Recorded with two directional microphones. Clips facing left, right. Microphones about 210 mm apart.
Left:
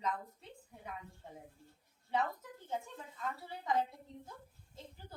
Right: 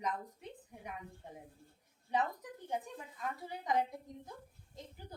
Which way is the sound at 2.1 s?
15° right (ahead or behind).